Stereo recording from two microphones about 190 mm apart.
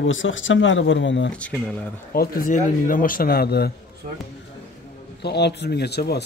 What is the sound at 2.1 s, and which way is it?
Speech, 50° left (ahead or behind).